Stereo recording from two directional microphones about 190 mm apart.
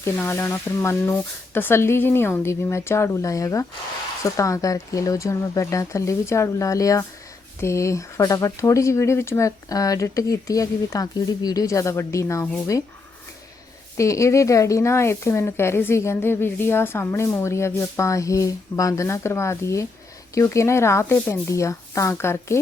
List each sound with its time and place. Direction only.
0.0 s speech: 10° left (ahead or behind)
13.9 s speech: 15° left (ahead or behind)